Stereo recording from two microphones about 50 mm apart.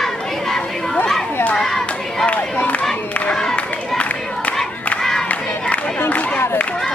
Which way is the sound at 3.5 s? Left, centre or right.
Left.